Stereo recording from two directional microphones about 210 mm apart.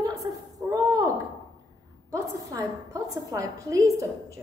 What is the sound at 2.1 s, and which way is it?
A woman's voice, 15° right (ahead or behind).